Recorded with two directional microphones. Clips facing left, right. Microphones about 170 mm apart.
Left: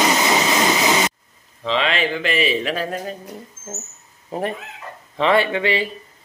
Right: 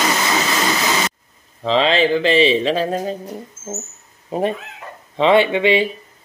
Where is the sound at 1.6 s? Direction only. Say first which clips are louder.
Right 5 dB; 35° right (ahead or behind).